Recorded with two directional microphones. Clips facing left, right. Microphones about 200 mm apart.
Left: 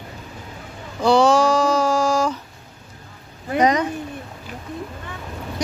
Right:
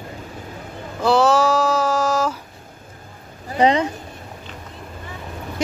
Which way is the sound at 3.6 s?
25° right (ahead or behind).